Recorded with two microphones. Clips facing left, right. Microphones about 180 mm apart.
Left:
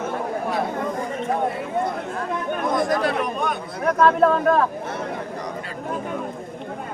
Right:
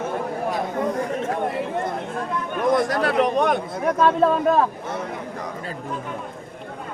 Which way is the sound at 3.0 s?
75° right (ahead or behind).